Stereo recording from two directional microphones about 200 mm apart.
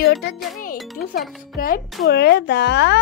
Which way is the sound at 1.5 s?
45° left (ahead or behind).